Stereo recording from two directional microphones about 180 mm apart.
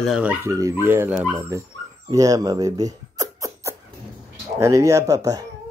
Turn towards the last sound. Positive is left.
turn(degrees=-20)  # may be behind; listen again after turning